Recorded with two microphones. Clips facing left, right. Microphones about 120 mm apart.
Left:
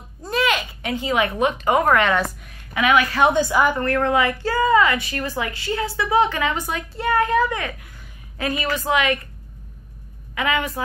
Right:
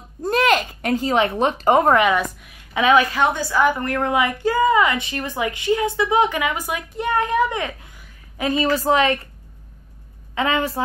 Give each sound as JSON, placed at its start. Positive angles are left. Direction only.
{"t": 0.3, "sound": "a sound", "side_deg": -45}
{"t": 1.2, "sound": "a woman's voice", "side_deg": -30}
{"t": 2.0, "sound": "a woman's voice", "side_deg": -10}
{"t": 2.7, "sound": "a woman's voice", "side_deg": -30}
{"t": 3.3, "sound": "a woman's voice", "side_deg": 20}
{"t": 3.8, "sound": "a woman's voice", "side_deg": -15}
{"t": 8.6, "sound": "a woman's voice", "side_deg": -35}
{"t": 10.3, "sound": "a woman's voice", "side_deg": -30}